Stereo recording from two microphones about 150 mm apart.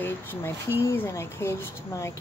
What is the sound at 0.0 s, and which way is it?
Speech, 15° left (ahead or behind).